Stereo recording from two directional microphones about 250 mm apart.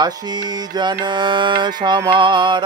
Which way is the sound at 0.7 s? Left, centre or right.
Centre.